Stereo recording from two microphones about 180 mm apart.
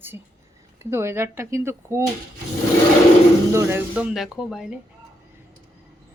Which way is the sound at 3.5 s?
15° right (ahead or behind).